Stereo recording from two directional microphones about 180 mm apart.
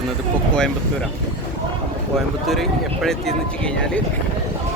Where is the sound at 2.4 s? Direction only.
Centre (ahead or behind).